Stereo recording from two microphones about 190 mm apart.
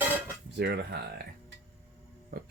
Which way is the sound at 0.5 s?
60° right (ahead or behind).